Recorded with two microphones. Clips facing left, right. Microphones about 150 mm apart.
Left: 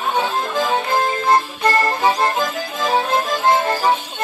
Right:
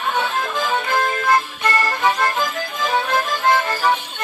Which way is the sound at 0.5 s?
30° left (ahead or behind).